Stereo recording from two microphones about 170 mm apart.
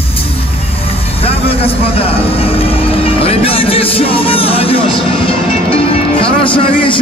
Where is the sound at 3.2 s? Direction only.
35° left (ahead or behind).